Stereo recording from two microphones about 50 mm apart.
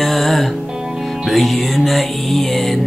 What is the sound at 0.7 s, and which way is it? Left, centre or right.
Music, centre.